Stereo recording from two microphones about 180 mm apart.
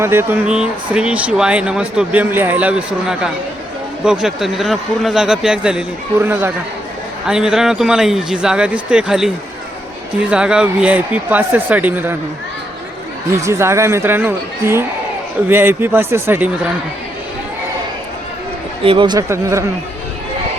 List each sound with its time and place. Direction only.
0.0 s speech: 15° right (ahead or behind)
13.3 s speech: 15° right (ahead or behind)
18.9 s speech: 25° right (ahead or behind)